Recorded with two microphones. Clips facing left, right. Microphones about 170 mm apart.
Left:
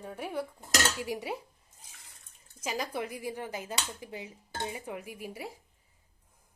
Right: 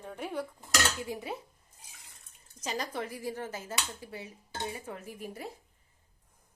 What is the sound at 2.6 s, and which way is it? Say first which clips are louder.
Speech: left 1 dB; 10° left (ahead or behind).